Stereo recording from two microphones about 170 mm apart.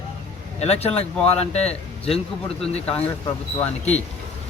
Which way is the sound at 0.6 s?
40° left (ahead or behind).